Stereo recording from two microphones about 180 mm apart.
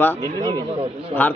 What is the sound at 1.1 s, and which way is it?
Speech, 35° right (ahead or behind).